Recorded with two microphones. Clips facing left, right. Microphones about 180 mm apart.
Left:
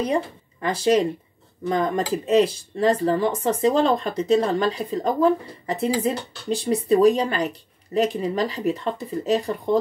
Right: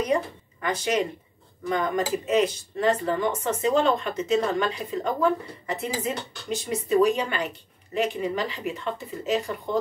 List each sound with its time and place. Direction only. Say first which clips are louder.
0.0 s speech: left 1 dB; 30° left (ahead or behind)